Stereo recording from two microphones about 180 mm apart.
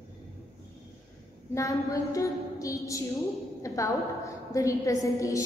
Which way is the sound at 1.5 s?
15° left (ahead or behind).